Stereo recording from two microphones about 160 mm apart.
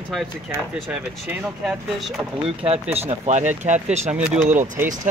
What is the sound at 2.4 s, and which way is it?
Speech, 35° right (ahead or behind).